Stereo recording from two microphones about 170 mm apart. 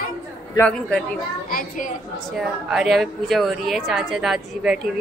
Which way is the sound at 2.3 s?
5° right (ahead or behind).